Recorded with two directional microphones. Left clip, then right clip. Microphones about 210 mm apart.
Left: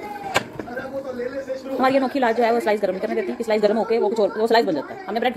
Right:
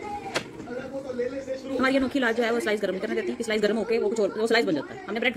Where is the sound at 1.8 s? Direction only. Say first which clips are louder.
Left 5 dB; 20° right (ahead or behind).